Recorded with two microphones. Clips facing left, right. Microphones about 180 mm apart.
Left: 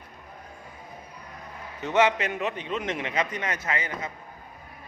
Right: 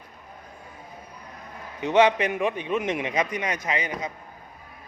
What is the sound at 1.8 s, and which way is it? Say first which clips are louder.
A man's voice: right 3 dB; 15° right (ahead or behind).